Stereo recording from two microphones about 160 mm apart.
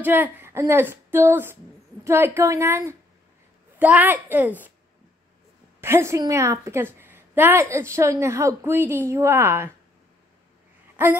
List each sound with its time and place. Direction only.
0.0 s a woman's voice: 10° right (ahead or behind)
5.8 s a woman's voice: 15° right (ahead or behind)